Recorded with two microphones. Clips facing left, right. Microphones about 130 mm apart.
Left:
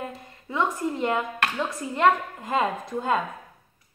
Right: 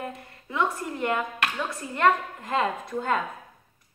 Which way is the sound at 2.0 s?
20° left (ahead or behind).